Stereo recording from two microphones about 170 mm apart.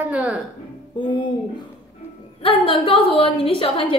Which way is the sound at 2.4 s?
35° left (ahead or behind).